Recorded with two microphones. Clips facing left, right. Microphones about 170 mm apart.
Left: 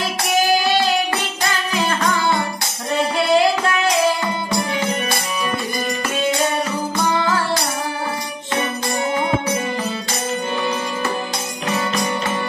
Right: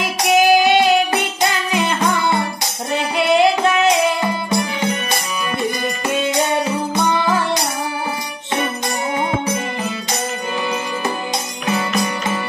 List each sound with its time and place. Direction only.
0.0 s music: 20° right (ahead or behind)
7.0 s music: 20° right (ahead or behind)